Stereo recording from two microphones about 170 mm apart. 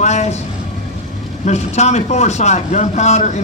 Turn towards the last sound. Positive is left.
turn(degrees=40)  # may be behind; listen again after turning